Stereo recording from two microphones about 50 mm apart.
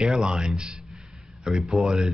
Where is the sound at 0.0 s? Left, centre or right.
Centre.